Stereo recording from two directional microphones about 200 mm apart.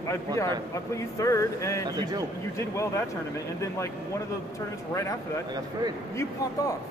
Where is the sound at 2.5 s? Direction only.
15° left (ahead or behind).